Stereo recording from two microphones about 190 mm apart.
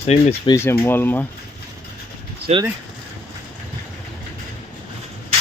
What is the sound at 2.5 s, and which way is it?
Speech, 35° right (ahead or behind).